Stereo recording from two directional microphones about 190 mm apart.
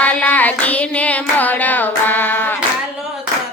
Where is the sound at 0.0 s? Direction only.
10° left (ahead or behind).